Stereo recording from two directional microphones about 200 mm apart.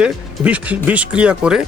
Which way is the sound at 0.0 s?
5° right (ahead or behind).